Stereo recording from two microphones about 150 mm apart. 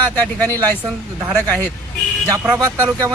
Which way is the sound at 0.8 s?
20° right (ahead or behind).